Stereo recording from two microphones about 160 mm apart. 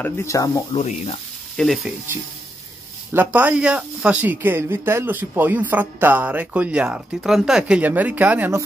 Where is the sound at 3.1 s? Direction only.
10° right (ahead or behind).